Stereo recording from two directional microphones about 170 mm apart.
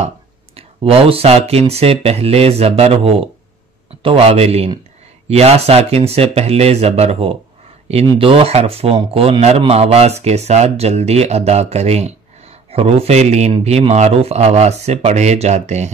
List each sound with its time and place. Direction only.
0.6 s speech: 35° right (ahead or behind)